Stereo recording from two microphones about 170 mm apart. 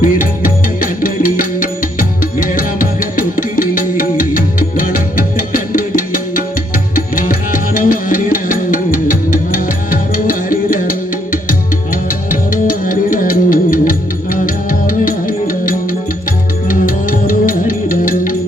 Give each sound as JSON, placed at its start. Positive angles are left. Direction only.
{"t": 0.0, "sound": "music", "side_deg": 55}
{"t": 6.9, "sound": "music", "side_deg": 55}